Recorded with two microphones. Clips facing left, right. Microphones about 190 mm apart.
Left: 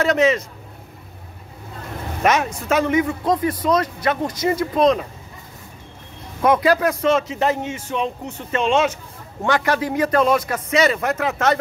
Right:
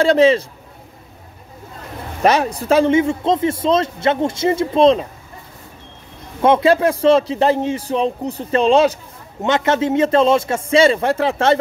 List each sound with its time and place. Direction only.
0.0 s speech: 30° right (ahead or behind)
2.2 s speech: 35° right (ahead or behind)
6.4 s speech: 25° right (ahead or behind)
9.4 s speech: 25° right (ahead or behind)